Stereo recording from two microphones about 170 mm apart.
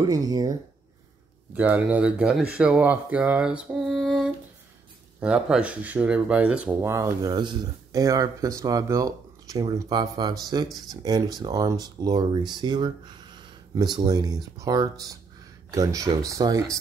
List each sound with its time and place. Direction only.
0.0 s speech: 20° right (ahead or behind)
1.5 s speech: 10° right (ahead or behind)
2.5 s mantra: 5° right (ahead or behind)
5.2 s speech: 5° right (ahead or behind)